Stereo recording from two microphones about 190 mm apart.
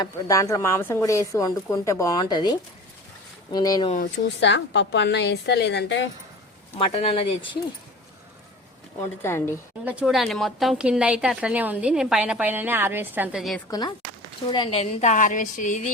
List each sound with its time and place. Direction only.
0.0 s speech: 20° left (ahead or behind)
4.4 s a woman's voice: 70° left (ahead or behind)
6.7 s speech: 30° left (ahead or behind)
9.2 s speech: 15° left (ahead or behind)
9.8 s speech: 5° right (ahead or behind)
13.7 s a woman's voice: 20° left (ahead or behind); by 15.9 s 40° left (ahead or behind)